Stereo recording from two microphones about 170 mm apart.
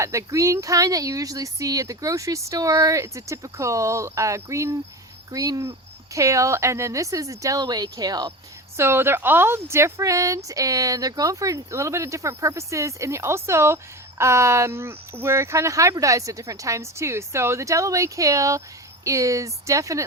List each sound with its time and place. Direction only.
0.0 s speech: 20° right (ahead or behind)